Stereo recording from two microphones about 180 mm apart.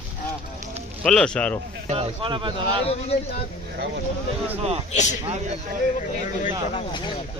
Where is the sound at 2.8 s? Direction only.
35° left (ahead or behind).